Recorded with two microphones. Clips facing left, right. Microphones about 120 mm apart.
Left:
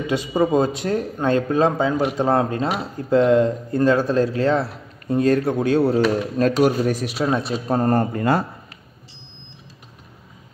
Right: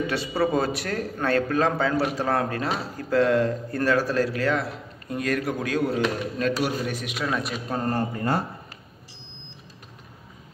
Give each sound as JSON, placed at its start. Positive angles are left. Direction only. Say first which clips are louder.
{"t": 0.0, "sound": "speech", "louder": "left 4 dB", "side_deg": 15}
{"t": 8.1, "sound": "speech", "louder": "left 6 dB", "side_deg": 90}